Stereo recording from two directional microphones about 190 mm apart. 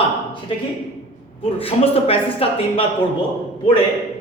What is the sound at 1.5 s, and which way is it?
A man's voice, 30° left (ahead or behind).